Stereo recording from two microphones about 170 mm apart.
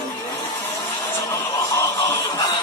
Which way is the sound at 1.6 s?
20° left (ahead or behind).